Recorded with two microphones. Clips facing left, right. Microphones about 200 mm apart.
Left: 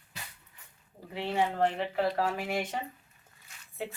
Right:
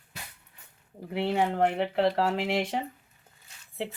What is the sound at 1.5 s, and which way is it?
Speech, 75° right (ahead or behind).